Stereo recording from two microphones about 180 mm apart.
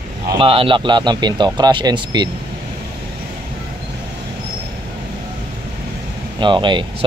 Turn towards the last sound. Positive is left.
turn(degrees=-25)  # may be behind; listen again after turning